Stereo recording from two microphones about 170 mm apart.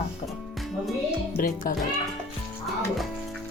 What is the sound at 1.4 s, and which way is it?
Speech, 55° left (ahead or behind).